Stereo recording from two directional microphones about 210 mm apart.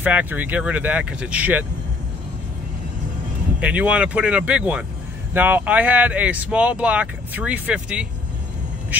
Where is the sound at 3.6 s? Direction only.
5° right (ahead or behind).